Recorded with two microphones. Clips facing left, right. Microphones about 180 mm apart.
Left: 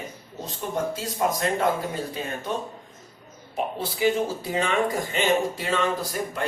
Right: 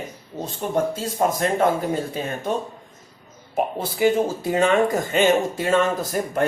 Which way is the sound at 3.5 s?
50° right (ahead or behind).